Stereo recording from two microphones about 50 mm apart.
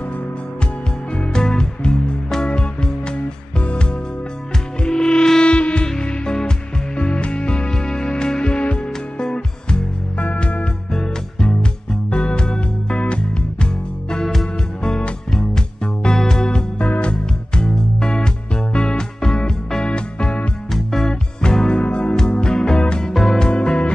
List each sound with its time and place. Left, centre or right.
1.1 s music: centre
14.1 s music: centre; by 20.4 s left
20.7 s music: centre